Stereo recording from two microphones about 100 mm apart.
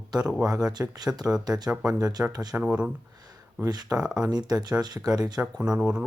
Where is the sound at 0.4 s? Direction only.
40° right (ahead or behind).